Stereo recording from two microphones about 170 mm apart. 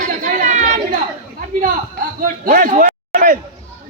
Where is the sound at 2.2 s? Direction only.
55° right (ahead or behind).